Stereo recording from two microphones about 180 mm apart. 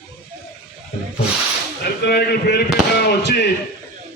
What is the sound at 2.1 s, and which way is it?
Speech, 70° left (ahead or behind).